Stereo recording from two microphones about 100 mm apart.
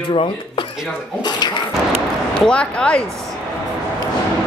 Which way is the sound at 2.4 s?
10° left (ahead or behind).